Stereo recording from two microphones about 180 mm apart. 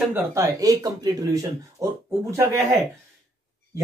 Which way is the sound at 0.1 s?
15° right (ahead or behind).